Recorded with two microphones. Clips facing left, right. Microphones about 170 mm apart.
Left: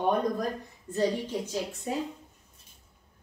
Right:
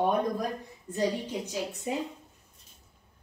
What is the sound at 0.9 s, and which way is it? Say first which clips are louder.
Speech: left 2 dB; 15° right (ahead or behind).